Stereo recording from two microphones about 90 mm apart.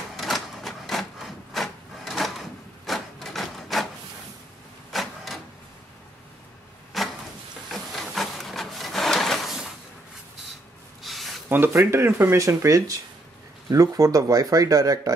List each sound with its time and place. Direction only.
0.1 s printer: centre (ahead or behind)
2.9 s wood: centre (ahead or behind)
4.9 s printer: centre (ahead or behind)
6.9 s a sound: centre (ahead or behind)
7.7 s printer: centre (ahead or behind)
11.0 s a sound: centre (ahead or behind)
11.4 s speech: 25° right (ahead or behind); by 15.1 s 40° right (ahead or behind)